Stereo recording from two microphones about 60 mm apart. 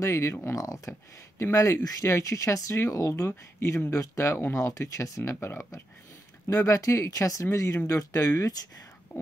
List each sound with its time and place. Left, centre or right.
0.0 s speech: left
2.0 s speech: left